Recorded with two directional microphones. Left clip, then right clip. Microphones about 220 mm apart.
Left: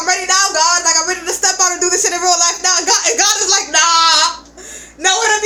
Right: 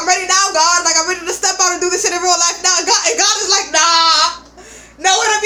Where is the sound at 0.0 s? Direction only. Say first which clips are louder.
Right 1 dB; 5° left (ahead or behind).